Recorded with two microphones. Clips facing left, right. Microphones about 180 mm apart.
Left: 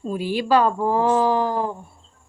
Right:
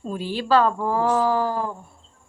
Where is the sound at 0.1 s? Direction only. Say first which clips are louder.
Left 1 dB; 10° left (ahead or behind).